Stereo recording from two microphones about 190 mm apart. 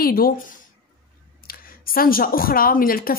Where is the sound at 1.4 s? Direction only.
50° left (ahead or behind).